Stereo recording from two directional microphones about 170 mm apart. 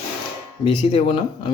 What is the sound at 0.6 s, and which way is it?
Speech, 30° left (ahead or behind).